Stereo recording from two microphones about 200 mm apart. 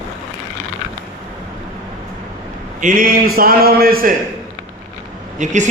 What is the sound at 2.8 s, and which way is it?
Speech, 45° right (ahead or behind).